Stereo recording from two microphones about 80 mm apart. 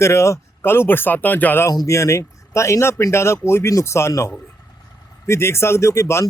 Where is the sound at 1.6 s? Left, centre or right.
Left.